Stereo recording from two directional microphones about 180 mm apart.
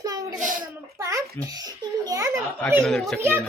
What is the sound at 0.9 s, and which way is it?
A child's voice, 15° right (ahead or behind).